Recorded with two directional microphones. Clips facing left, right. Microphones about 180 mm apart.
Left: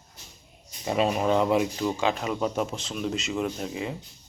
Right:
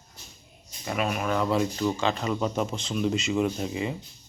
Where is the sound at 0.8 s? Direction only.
25° left (ahead or behind); by 3.9 s centre (ahead or behind).